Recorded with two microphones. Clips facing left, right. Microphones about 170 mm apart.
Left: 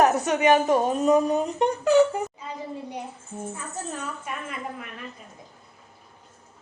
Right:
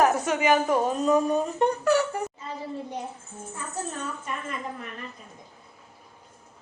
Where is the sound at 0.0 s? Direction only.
20° left (ahead or behind).